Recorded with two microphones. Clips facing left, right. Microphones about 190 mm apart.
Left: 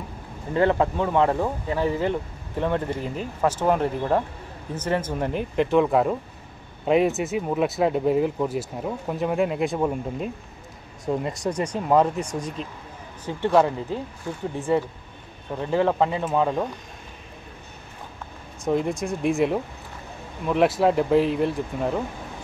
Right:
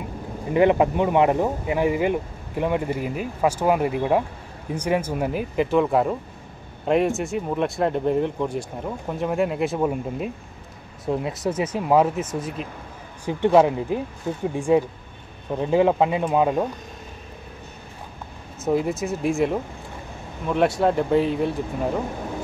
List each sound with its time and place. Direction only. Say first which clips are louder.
0.5 s speech: right 3 dB; 15° right (ahead or behind)
18.6 s speech: right 1 dB; 5° right (ahead or behind)